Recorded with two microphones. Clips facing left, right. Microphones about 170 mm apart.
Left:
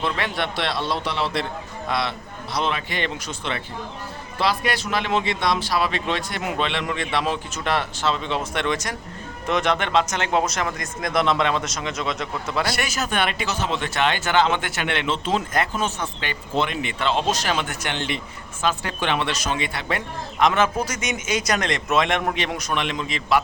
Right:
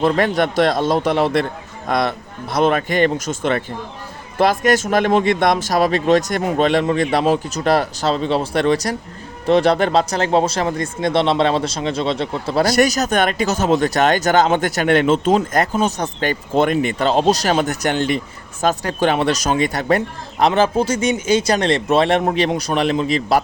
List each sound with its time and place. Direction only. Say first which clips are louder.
0.0 s a man's voice: right 9 dB; 45° right (ahead or behind)